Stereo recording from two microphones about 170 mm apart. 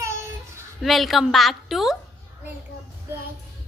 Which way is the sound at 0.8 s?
Centre (ahead or behind).